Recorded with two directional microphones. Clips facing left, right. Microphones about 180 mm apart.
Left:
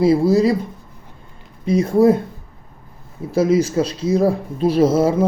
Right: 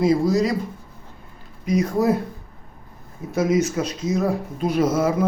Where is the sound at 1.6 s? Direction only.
30° left (ahead or behind).